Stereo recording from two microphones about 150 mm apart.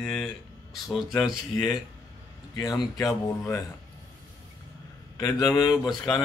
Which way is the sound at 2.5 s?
25° left (ahead or behind).